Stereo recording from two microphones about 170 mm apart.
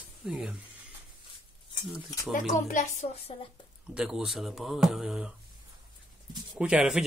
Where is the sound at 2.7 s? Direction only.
45° left (ahead or behind).